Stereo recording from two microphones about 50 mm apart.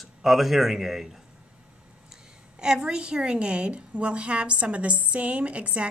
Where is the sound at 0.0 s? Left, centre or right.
Centre.